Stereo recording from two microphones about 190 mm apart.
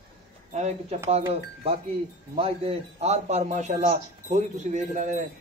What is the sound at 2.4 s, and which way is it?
Speech, 30° right (ahead or behind).